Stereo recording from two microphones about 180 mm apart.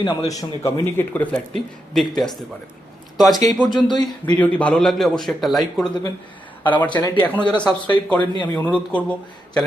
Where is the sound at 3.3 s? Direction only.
20° left (ahead or behind).